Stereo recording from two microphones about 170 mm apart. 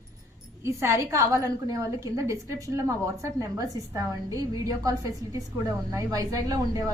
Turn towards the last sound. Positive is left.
turn(degrees=-20)  # may be behind; listen again after turning